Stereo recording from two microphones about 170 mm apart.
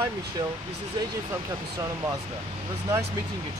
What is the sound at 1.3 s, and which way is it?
Speech, 20° right (ahead or behind).